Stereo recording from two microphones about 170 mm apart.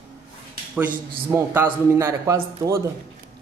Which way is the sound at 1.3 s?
10° right (ahead or behind).